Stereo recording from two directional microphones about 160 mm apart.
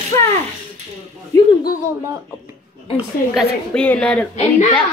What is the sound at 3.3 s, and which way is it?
Speech, centre (ahead or behind).